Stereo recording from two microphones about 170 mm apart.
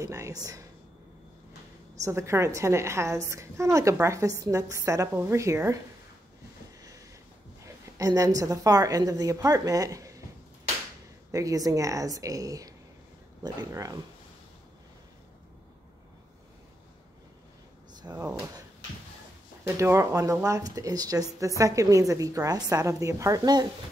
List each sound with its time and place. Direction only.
0.0 s a woman's voice: 20° right (ahead or behind)
2.0 s a woman's voice: 15° right (ahead or behind)
7.6 s a woman's voice: 20° right (ahead or behind)
11.3 s a woman's voice: 20° right (ahead or behind)
18.1 s a woman's voice: 15° right (ahead or behind)
19.8 s a woman's voice: 15° right (ahead or behind)